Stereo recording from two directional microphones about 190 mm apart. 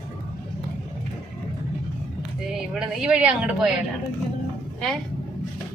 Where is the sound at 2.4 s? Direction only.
5° right (ahead or behind).